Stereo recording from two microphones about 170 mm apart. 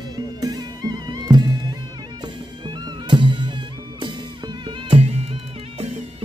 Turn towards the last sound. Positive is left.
turn(degrees=-40)  # may be behind; listen again after turning